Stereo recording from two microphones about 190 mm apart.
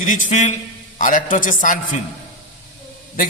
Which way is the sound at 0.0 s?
40° left (ahead or behind).